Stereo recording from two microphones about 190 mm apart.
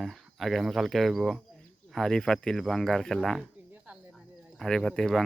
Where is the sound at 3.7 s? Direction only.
5° right (ahead or behind).